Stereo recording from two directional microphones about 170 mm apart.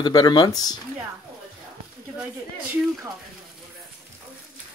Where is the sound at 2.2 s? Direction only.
5° right (ahead or behind).